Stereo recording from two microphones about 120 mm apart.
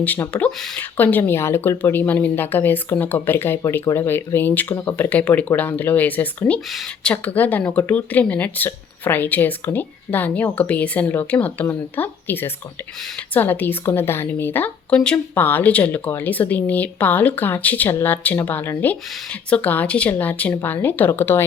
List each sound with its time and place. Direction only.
0.0 s speech: 15° left (ahead or behind)
6.7 s speech: 5° left (ahead or behind); by 21.4 s 20° left (ahead or behind)